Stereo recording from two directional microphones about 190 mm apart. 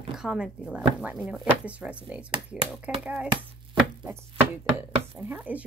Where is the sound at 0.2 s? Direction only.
5° right (ahead or behind).